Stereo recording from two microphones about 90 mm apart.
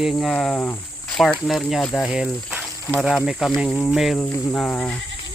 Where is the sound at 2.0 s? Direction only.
10° right (ahead or behind).